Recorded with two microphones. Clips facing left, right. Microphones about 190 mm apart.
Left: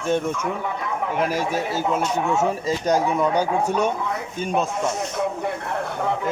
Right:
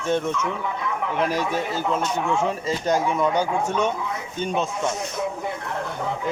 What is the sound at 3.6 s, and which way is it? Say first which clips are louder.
Speech: left 2 dB; 40° left (ahead or behind).